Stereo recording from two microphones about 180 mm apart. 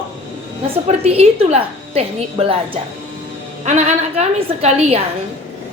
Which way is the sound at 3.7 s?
35° right (ahead or behind).